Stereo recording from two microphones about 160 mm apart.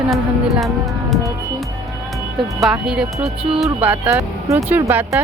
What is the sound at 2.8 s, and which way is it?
Speech, 5° right (ahead or behind).